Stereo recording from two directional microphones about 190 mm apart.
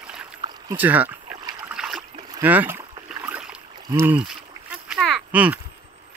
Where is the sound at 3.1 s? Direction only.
10° right (ahead or behind).